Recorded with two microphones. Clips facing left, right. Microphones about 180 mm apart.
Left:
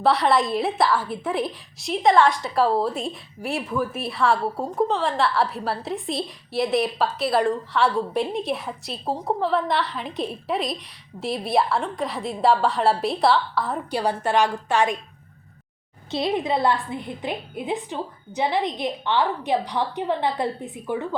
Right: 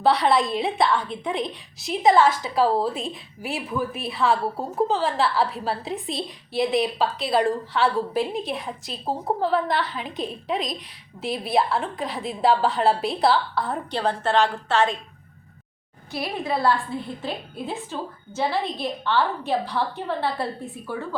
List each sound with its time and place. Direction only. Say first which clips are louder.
0.0 s a woman's voice: even; centre (ahead or behind)
14.0 s a woman's voice: even; 10° left (ahead or behind)
16.1 s a woman's voice: left 4 dB; 20° left (ahead or behind)